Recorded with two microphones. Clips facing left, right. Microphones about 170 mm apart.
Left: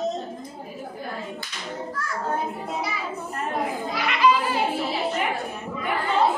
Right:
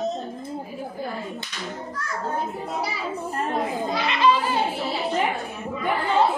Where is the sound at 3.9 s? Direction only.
25° right (ahead or behind).